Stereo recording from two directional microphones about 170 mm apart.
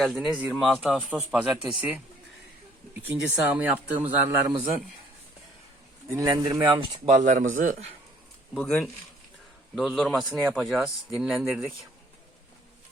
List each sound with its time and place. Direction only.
0.0 s a man's voice: centre (ahead or behind)
3.4 s speech: 10° right (ahead or behind)
6.1 s speech: 20° right (ahead or behind)
7.1 s a man's voice: 45° right (ahead or behind)
8.5 s a man's voice: 5° left (ahead or behind)